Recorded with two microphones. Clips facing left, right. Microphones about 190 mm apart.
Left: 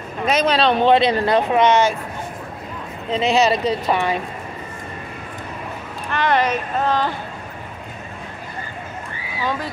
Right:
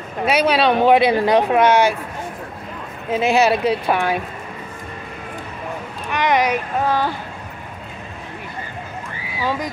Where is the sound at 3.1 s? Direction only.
5° right (ahead or behind).